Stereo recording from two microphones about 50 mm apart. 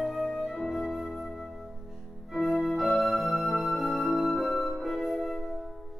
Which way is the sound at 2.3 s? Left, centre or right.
Centre.